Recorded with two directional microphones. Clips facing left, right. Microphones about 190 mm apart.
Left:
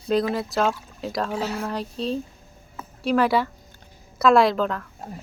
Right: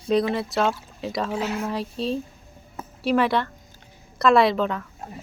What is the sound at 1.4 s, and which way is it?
Speech, 35° left (ahead or behind).